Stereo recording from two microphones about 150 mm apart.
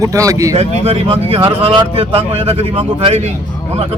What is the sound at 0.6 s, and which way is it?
Speech, 40° right (ahead or behind).